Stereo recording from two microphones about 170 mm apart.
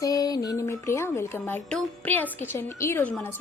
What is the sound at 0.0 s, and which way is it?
Speech, 20° left (ahead or behind).